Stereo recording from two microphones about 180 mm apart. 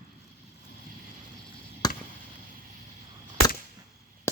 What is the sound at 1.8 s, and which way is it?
Chop, 20° left (ahead or behind).